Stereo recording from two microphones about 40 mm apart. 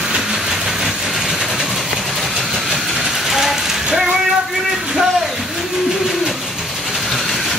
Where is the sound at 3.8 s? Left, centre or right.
Centre.